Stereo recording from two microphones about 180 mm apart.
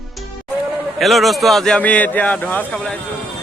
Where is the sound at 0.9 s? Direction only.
Centre (ahead or behind).